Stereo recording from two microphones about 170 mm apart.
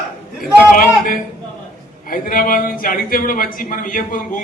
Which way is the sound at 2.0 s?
55° left (ahead or behind).